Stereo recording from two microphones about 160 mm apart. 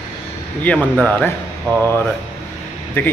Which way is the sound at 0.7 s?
10° left (ahead or behind).